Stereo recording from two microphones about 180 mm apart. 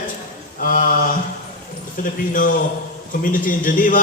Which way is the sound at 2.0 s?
50° left (ahead or behind).